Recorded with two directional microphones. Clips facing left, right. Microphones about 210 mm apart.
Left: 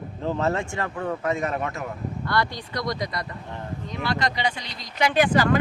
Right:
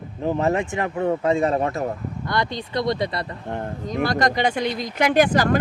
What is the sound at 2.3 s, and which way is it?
Speech, 20° right (ahead or behind).